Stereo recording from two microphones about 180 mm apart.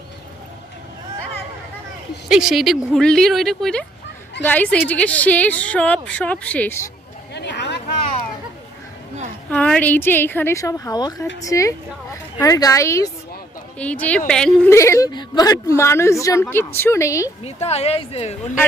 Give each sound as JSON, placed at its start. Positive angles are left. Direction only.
{"t": 2.3, "sound": "a woman's voice", "side_deg": 0}
{"t": 7.3, "sound": "a sound", "side_deg": 70}
{"t": 9.5, "sound": "a woman's voice", "side_deg": 5}
{"t": 14.7, "sound": "a woman's voice", "side_deg": 15}
{"t": 17.4, "sound": "a woman's voice", "side_deg": 35}